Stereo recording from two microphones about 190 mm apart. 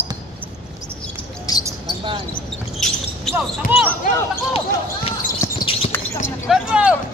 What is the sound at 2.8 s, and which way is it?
Basketball bounce, centre (ahead or behind).